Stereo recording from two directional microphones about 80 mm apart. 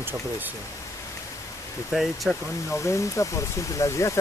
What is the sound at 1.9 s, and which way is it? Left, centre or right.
Speech, centre.